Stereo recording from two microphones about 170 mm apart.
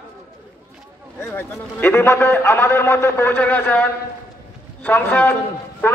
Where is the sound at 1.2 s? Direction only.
15° left (ahead or behind).